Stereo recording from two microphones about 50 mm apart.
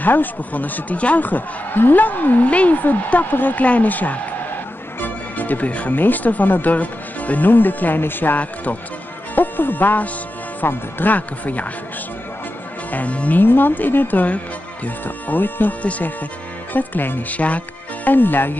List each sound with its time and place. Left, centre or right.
0.0 s speech: left
5.0 s music: left
5.9 s speech: left
12.9 s music: left
13.4 s speech: left
15.8 s music: left
16.7 s speech: left
17.3 s music: left
18.1 s speech: left